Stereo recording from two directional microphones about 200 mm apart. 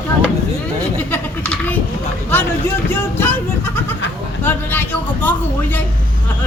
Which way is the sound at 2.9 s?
10° left (ahead or behind).